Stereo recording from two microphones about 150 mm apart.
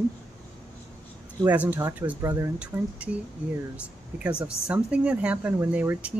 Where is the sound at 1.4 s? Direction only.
10° right (ahead or behind).